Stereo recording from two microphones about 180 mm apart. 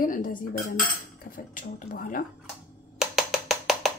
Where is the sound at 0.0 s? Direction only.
50° left (ahead or behind).